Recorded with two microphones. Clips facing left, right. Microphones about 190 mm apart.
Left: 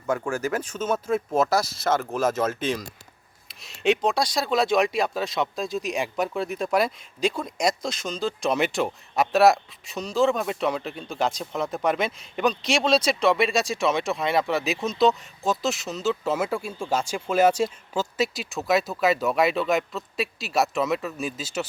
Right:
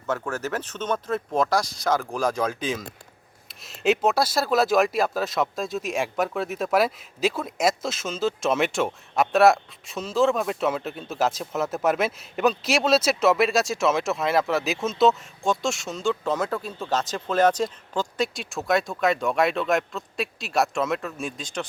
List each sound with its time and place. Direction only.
0.1 s speech: 10° left (ahead or behind)